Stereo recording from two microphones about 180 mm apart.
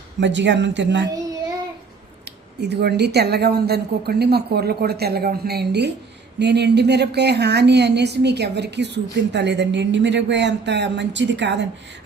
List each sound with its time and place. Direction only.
0.2 s speech: 80° right
2.2 s a woman's voice: 65° right (ahead or behind)